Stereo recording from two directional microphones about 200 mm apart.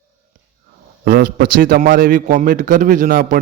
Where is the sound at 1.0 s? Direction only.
45° right (ahead or behind).